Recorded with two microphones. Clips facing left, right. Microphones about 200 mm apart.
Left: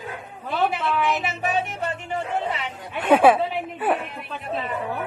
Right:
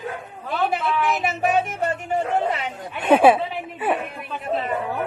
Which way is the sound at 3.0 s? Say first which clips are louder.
Right 1 dB; 25° right (ahead or behind).